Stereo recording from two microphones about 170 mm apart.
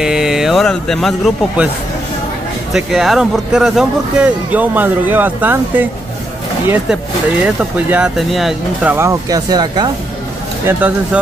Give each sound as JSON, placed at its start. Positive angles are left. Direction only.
{"t": 0.0, "sound": "speech", "side_deg": -5}
{"t": 2.7, "sound": "speech", "side_deg": 0}
{"t": 7.4, "sound": "speech", "side_deg": -5}
{"t": 8.9, "sound": "speech", "side_deg": -15}
{"t": 10.7, "sound": "speech", "side_deg": -10}